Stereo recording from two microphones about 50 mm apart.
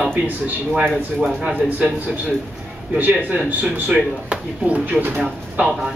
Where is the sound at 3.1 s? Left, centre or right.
Centre; by 5.2 s right.